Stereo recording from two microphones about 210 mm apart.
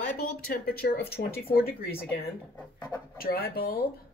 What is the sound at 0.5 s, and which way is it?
A woman's voice, 50° left (ahead or behind).